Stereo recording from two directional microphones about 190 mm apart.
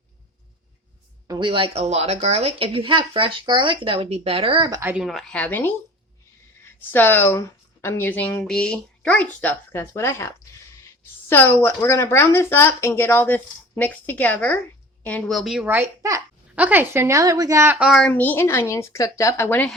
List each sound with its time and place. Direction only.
1.3 s speech: 25° right (ahead or behind)
4.8 s a child's voice: 5° right (ahead or behind); by 5.7 s 10° left (ahead or behind)
6.9 s a woman's voice: 10° left (ahead or behind)